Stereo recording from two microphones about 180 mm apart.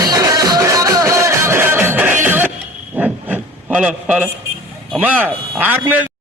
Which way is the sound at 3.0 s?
10° right (ahead or behind).